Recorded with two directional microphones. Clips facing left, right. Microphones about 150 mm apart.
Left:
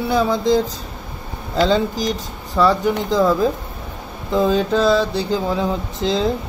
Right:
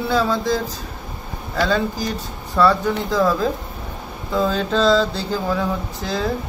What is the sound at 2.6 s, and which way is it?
Speech, 15° left (ahead or behind).